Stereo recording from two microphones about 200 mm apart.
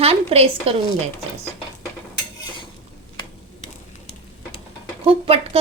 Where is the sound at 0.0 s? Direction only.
30° right (ahead or behind).